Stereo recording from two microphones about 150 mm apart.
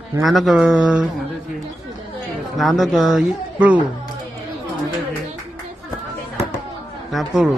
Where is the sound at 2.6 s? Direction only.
Centre (ahead or behind).